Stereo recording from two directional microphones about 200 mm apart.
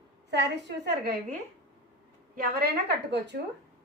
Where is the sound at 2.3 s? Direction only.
50° right (ahead or behind).